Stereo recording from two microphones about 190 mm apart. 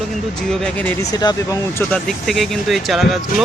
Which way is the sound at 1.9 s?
Centre (ahead or behind).